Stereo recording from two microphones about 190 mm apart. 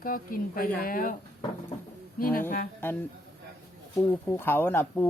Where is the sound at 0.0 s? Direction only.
50° left (ahead or behind).